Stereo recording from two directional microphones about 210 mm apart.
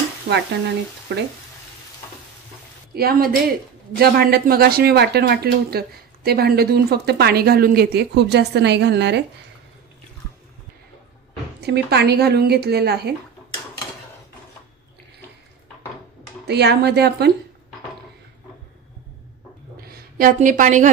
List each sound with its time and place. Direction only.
0.3 s speech: 50° right (ahead or behind)
2.9 s speech: 45° right (ahead or behind)
11.6 s speech: 50° right (ahead or behind)
16.4 s speech: 50° right (ahead or behind)
19.9 s a woman's voice: 45° right (ahead or behind)